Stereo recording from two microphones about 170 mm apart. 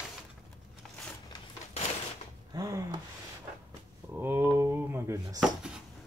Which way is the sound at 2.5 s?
20° right (ahead or behind).